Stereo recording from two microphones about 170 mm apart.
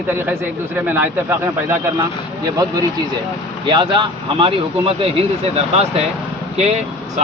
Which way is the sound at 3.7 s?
30° right (ahead or behind).